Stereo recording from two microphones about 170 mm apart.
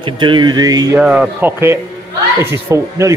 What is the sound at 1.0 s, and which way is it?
A man's voice, 5° right (ahead or behind).